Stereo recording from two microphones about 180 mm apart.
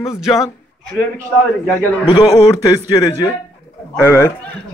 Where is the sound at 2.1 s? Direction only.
25° left (ahead or behind).